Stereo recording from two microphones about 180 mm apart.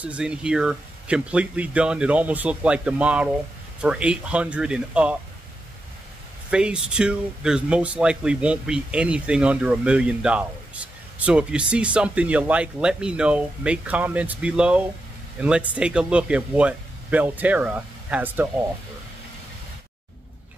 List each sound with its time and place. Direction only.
0.0 s speech: 5° right (ahead or behind)
6.5 s speech: 5° right (ahead or behind)